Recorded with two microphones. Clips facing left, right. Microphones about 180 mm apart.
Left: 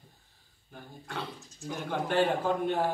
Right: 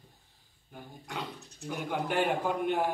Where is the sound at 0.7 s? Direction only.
15° right (ahead or behind).